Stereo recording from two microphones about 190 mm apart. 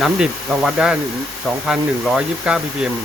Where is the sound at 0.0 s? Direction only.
Centre (ahead or behind).